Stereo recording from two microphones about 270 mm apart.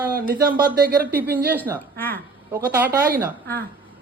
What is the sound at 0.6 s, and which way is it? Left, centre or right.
Speech, right.